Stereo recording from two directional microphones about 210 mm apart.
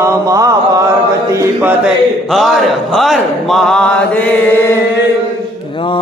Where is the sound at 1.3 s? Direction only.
10° right (ahead or behind).